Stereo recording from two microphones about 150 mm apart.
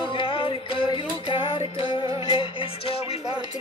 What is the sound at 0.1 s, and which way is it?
Music, 35° left (ahead or behind).